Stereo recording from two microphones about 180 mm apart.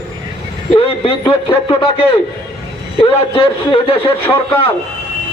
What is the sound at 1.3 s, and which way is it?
Speech, 30° left (ahead or behind).